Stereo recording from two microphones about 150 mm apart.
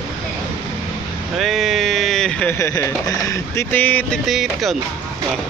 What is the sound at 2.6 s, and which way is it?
Speech, 20° left (ahead or behind).